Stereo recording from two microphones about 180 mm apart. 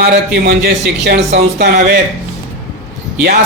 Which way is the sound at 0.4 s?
65° right (ahead or behind).